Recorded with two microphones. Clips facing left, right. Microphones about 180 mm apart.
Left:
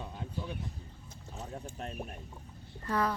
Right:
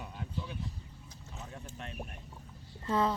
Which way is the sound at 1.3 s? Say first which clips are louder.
Left 4 dB; 35° left (ahead or behind).